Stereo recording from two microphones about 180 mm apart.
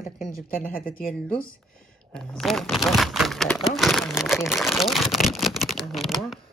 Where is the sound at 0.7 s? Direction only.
50° left (ahead or behind).